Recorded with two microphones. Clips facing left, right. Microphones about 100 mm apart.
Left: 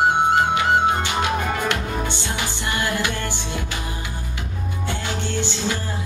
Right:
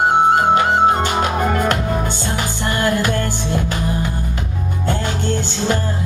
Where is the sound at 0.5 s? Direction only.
45° right (ahead or behind).